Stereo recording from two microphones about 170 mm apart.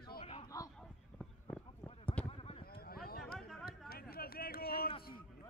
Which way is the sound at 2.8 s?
60° left (ahead or behind).